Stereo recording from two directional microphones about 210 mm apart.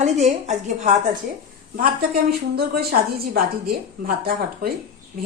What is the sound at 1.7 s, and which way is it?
A woman's voice, 45° right (ahead or behind).